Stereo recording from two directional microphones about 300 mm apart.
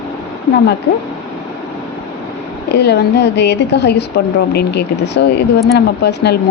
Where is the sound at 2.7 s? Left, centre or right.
Left.